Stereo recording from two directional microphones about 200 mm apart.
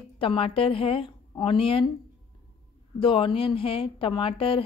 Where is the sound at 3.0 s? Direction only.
25° left (ahead or behind).